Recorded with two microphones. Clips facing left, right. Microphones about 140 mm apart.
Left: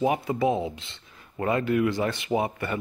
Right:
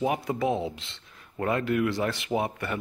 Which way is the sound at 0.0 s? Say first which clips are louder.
Left 3 dB; centre (ahead or behind).